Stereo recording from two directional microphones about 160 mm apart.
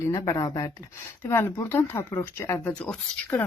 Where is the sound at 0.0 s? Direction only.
20° left (ahead or behind).